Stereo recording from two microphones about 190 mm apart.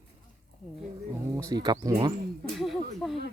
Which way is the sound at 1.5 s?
20° right (ahead or behind).